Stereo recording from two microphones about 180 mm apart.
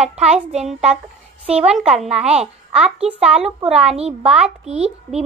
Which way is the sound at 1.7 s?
Centre (ahead or behind).